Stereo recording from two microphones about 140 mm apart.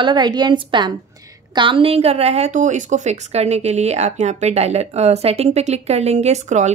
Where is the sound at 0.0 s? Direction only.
30° right (ahead or behind).